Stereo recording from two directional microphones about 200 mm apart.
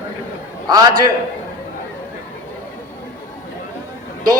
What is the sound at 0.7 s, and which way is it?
Speech, 20° right (ahead or behind).